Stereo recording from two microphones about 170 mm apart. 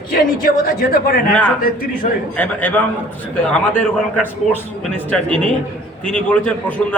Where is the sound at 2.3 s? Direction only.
10° left (ahead or behind).